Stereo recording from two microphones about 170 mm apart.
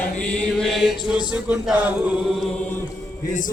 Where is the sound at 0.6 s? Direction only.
Centre (ahead or behind).